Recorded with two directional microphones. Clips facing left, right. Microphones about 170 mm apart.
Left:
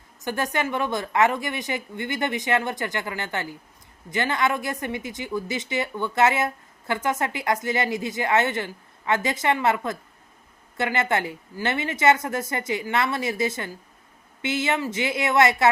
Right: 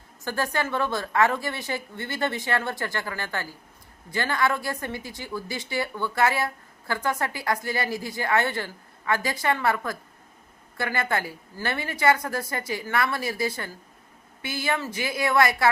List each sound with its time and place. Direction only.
0.2 s a woman's voice: 20° left (ahead or behind)